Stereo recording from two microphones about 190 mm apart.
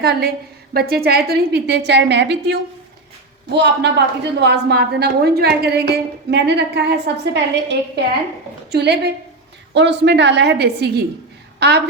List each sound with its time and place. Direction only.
0.0 s a woman's voice: 60° right (ahead or behind)